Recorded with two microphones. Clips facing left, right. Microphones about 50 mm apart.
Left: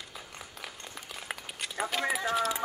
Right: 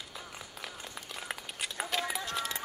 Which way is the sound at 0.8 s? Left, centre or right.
Centre.